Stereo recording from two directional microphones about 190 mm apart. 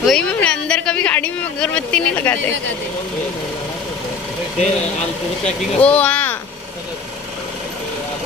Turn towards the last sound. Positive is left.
turn(degrees=10)  # may be behind; listen again after turning